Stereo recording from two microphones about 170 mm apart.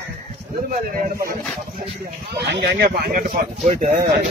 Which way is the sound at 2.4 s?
75° right (ahead or behind).